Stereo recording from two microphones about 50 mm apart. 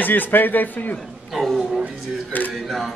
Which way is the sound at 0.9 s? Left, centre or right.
Centre.